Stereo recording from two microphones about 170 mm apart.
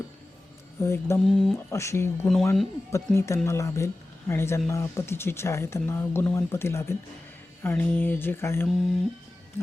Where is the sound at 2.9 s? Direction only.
15° left (ahead or behind).